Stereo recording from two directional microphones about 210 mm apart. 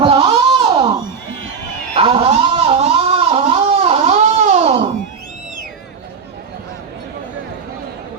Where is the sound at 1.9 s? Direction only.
30° right (ahead or behind).